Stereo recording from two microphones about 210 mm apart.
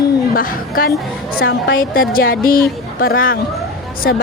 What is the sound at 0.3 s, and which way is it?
Speech, 45° left (ahead or behind).